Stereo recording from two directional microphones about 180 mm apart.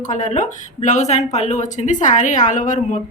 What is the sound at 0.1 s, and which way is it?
Speech, 40° left (ahead or behind).